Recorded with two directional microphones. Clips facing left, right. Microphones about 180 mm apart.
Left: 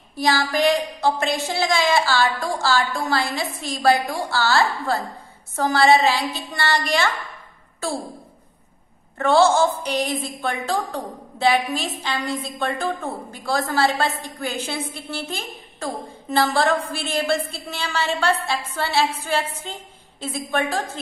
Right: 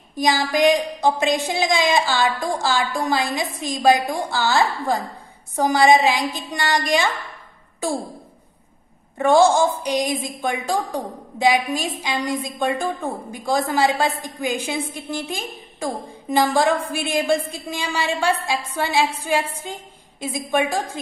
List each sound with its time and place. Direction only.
0.2 s a woman's voice: 15° right (ahead or behind)
9.2 s a woman's voice: 15° right (ahead or behind)